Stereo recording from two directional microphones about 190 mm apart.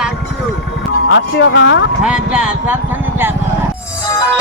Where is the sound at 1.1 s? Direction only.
70° left (ahead or behind).